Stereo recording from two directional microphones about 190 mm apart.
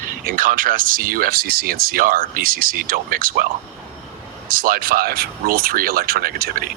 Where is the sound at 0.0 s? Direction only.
45° right (ahead or behind).